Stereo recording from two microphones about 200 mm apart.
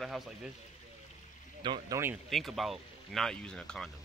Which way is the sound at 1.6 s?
20° right (ahead or behind).